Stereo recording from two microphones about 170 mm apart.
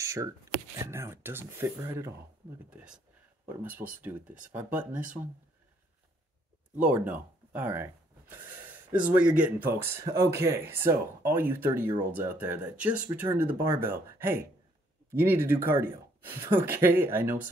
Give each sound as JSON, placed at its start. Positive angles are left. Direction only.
{"t": 0.0, "sound": "a sound", "side_deg": -20}
{"t": 0.8, "sound": "speech", "side_deg": -15}
{"t": 3.4, "sound": "speech", "side_deg": -10}
{"t": 6.8, "sound": "speech", "side_deg": -10}